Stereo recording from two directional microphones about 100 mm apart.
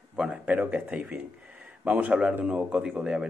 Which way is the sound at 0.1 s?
10° right (ahead or behind).